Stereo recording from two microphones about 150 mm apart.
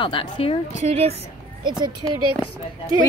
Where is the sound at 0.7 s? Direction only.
45° right (ahead or behind).